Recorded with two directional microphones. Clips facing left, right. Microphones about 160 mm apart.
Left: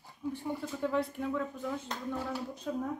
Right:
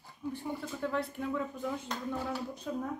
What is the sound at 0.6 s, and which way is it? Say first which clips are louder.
Speech: left 4 dB; 5° left (ahead or behind).